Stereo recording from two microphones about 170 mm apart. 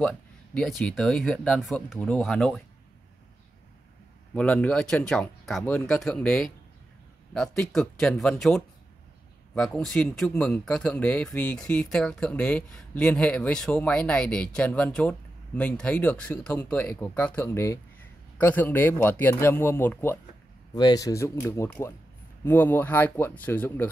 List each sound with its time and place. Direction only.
0.0 s speech: centre (ahead or behind)
4.4 s speech: 5° left (ahead or behind)
20.7 s speech: 25° left (ahead or behind)